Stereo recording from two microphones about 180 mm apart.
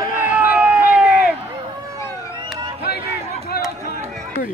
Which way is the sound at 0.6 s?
5° right (ahead or behind).